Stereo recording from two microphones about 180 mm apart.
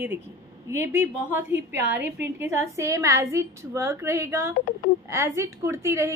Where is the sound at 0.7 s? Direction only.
15° right (ahead or behind).